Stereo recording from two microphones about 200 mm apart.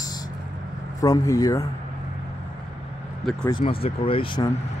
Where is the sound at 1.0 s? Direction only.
15° left (ahead or behind).